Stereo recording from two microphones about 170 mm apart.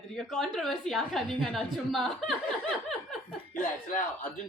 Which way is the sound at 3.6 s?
50° left (ahead or behind).